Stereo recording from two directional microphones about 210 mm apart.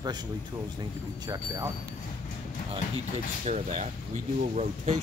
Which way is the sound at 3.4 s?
35° right (ahead or behind).